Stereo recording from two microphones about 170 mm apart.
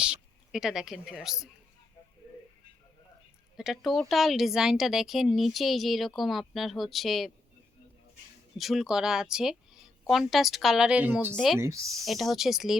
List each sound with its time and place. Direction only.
0.0 s speech: 5° right (ahead or behind)
3.6 s speech: centre (ahead or behind)
8.5 s speech: centre (ahead or behind); by 11.9 s 20° right (ahead or behind)
12.0 s speech: centre (ahead or behind)